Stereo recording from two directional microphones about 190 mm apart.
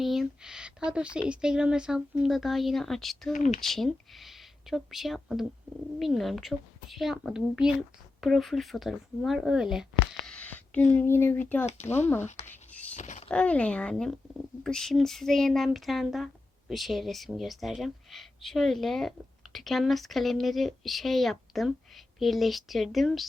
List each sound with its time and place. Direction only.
0.0 s speech: centre (ahead or behind)
3.3 s speech: 40° left (ahead or behind)
3.6 s speech: centre (ahead or behind)
10.2 s a sound: 5° left (ahead or behind)
10.9 s speech: 10° left (ahead or behind)
12.5 s writing: 5° left (ahead or behind)
13.0 s speech: 40° left (ahead or behind)
13.2 s speech: 5° left (ahead or behind)